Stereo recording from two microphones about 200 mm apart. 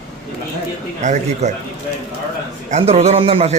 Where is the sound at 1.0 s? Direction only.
35° right (ahead or behind).